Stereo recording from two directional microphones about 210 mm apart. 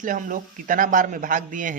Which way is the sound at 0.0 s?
40° right (ahead or behind).